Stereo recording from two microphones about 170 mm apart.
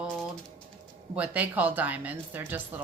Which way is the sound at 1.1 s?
10° right (ahead or behind).